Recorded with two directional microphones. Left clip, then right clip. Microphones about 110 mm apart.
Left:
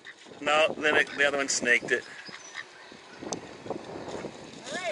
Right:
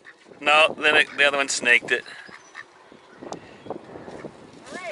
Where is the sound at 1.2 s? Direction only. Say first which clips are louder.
Right 6 dB; 20° right (ahead or behind).